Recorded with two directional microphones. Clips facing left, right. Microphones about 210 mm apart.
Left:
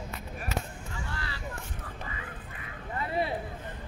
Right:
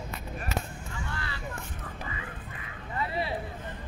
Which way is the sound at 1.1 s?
35° left (ahead or behind).